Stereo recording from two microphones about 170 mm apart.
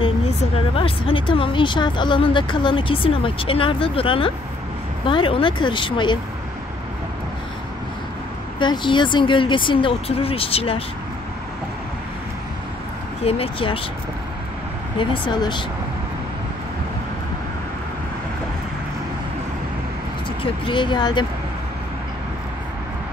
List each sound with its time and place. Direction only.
0.0 s speech: 30° left (ahead or behind)
8.5 s speech: 30° left (ahead or behind)
13.2 s speech: 35° left (ahead or behind)
15.0 s speech: 25° left (ahead or behind)
20.6 s speech: 30° left (ahead or behind)